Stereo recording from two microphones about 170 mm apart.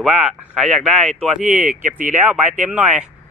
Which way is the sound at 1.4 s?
50° right (ahead or behind).